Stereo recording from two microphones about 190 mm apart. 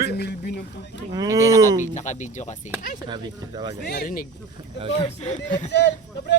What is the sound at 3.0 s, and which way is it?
Speech, 25° right (ahead or behind).